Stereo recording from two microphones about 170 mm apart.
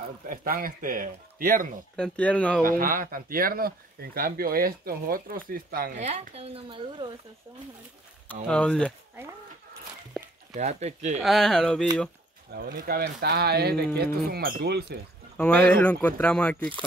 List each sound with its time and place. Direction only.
0.3 s speech: 55° right (ahead or behind)
2.0 s speech: 5° left (ahead or behind)
2.8 s speech: 55° right (ahead or behind)
5.9 s speech: 40° right (ahead or behind)
8.5 s speech: 5° left (ahead or behind)
10.5 s speech: 40° right (ahead or behind)
11.1 s speech: centre (ahead or behind)
12.5 s speech: 70° right (ahead or behind)
15.3 s speech: 10° left (ahead or behind)